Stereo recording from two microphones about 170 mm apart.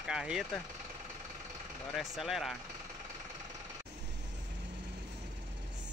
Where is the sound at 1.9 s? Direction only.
Centre (ahead or behind).